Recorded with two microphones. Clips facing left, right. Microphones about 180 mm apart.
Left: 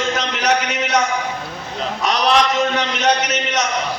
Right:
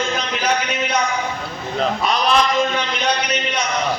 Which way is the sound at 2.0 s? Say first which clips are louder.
Left 4 dB; 75° left (ahead or behind).